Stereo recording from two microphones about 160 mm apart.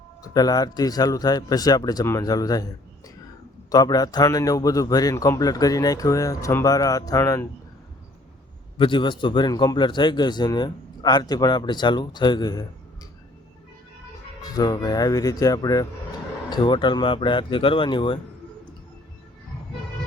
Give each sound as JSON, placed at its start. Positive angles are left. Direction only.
{"t": 0.2, "sound": "a man's voice", "side_deg": 25}
{"t": 3.7, "sound": "a man's voice", "side_deg": 25}
{"t": 8.8, "sound": "a man's voice", "side_deg": 30}
{"t": 14.4, "sound": "a man's voice", "side_deg": 25}